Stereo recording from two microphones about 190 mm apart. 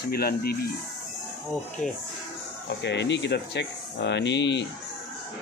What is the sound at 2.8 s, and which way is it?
Speech, 65° left (ahead or behind).